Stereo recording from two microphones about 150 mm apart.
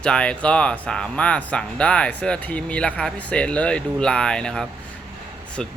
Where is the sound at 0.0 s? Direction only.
5° left (ahead or behind).